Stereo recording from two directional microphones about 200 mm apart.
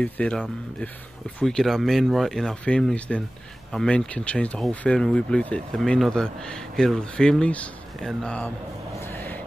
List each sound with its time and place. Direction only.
0.0 s speech: 5° left (ahead or behind)
9.0 s vehicle: 10° left (ahead or behind)